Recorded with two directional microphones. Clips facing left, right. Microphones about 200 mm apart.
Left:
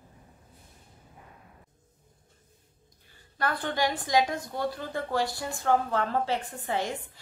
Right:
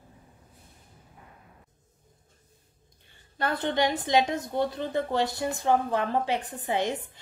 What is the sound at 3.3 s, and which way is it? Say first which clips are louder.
Speech: right 3 dB; 25° right (ahead or behind).